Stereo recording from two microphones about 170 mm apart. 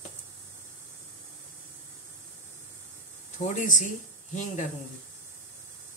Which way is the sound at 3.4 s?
45° left (ahead or behind).